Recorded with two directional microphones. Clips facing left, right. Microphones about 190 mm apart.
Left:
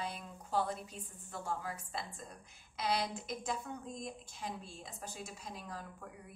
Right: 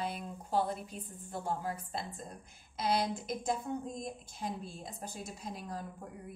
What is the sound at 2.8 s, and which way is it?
Speech, 50° right (ahead or behind).